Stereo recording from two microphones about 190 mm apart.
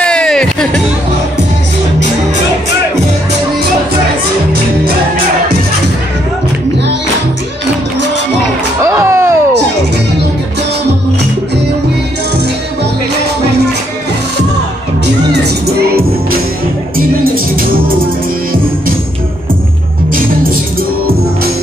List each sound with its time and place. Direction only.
0.0 s music: 5° left (ahead or behind)
8.8 s a sound: 15° right (ahead or behind)
16.9 s music: 50° right (ahead or behind)